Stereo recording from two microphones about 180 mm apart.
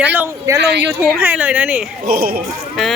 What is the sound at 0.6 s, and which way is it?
Speech, 70° right (ahead or behind).